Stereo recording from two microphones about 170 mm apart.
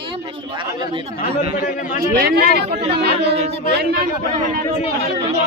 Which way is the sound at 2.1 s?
65° right (ahead or behind).